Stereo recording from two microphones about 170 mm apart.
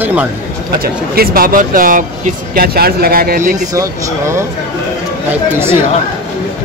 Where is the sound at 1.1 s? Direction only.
60° right (ahead or behind).